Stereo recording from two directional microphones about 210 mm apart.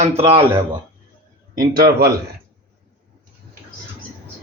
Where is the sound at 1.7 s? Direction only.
45° right (ahead or behind).